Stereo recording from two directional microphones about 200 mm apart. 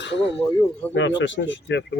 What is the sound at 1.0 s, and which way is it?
Speech, 65° left (ahead or behind).